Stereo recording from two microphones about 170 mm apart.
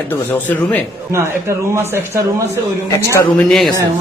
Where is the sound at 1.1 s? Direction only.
15° right (ahead or behind).